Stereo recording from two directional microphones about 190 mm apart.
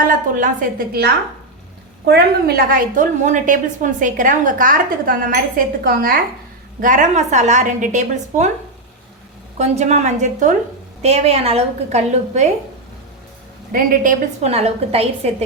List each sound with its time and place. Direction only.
0.1 s a woman's voice: 45° right (ahead or behind)
2.0 s a woman's voice: 55° right (ahead or behind); by 8.4 s 40° right (ahead or behind)
9.6 s a woman's voice: 35° right (ahead or behind)
13.7 s a woman's voice: 45° right (ahead or behind)